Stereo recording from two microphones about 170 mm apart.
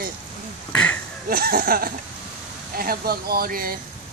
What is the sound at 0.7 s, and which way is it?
Speech, 10° left (ahead or behind).